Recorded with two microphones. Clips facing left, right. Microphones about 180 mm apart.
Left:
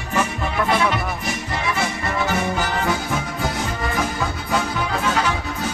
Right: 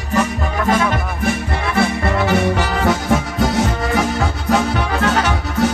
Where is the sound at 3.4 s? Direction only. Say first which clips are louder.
Right 7 dB; 85° right.